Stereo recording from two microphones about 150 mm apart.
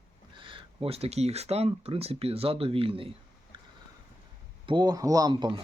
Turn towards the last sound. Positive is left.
turn(degrees=-30)  # may be behind; listen again after turning